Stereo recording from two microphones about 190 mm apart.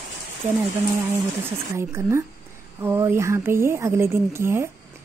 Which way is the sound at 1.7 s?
15° right (ahead or behind).